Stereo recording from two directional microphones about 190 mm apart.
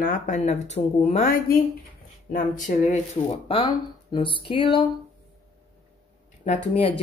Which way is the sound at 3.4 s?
30° left (ahead or behind).